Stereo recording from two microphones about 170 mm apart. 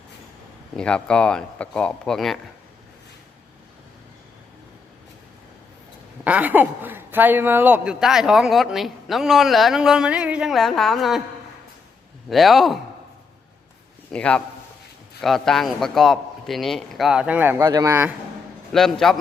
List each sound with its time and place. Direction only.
0.8 s a woman's voice: 5° left (ahead or behind)
6.2 s a woman's voice: 10° right (ahead or behind)
12.3 s a woman's voice: centre (ahead or behind)
14.1 s a man's voice: 5° left (ahead or behind); by 18.1 s 15° right (ahead or behind)
18.7 s a woman's voice: centre (ahead or behind)